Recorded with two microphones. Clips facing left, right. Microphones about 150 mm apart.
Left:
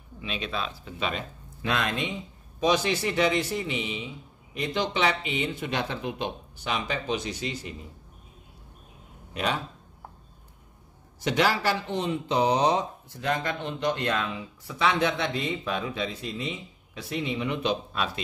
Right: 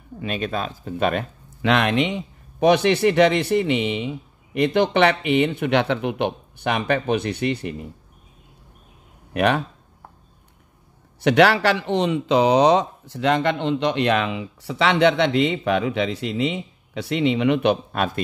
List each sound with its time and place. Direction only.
0.2 s speech: 50° right (ahead or behind)
1.6 s speech: 70° right (ahead or behind)
9.3 s speech: 65° right (ahead or behind)
11.1 s speech: 70° right (ahead or behind)